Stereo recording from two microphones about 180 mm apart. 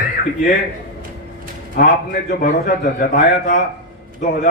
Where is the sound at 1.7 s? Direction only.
50° left (ahead or behind).